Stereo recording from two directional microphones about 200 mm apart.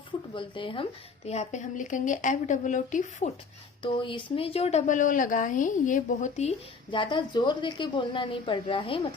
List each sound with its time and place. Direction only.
0.3 s a woman's voice: 25° left (ahead or behind)
3.8 s speech: 25° left (ahead or behind)